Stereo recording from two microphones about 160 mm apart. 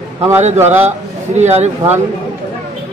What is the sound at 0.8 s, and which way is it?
Speech, 45° right (ahead or behind).